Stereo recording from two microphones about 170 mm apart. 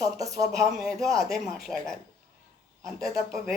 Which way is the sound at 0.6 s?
Centre (ahead or behind).